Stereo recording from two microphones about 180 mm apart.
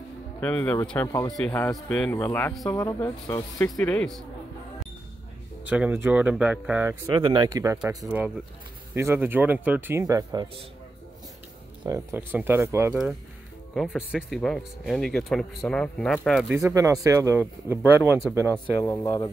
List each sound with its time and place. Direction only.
0.4 s speech: 10° left (ahead or behind)
1.0 s speech: 20° left (ahead or behind)
1.3 s speech: 10° left (ahead or behind)
3.8 s speech: 5° left (ahead or behind)
5.6 s speech: 10° right (ahead or behind)
7.2 s speech: 25° right (ahead or behind)
8.9 s speech: 15° right (ahead or behind)
11.8 s speech: 15° right (ahead or behind)
13.7 s speech: 5° right (ahead or behind)
16.5 s speech: 15° right (ahead or behind)
18.8 s speech: 15° left (ahead or behind)